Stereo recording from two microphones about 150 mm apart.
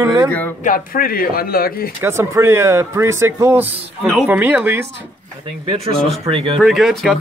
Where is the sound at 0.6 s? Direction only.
70° left (ahead or behind); by 1.9 s 85° left.